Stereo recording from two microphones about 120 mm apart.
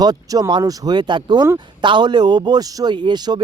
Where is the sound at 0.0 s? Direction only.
35° right (ahead or behind).